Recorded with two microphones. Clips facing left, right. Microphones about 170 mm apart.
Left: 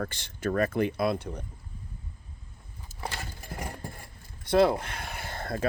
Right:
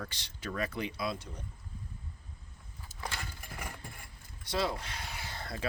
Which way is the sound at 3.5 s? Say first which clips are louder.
Left 10 dB; 40° left (ahead or behind).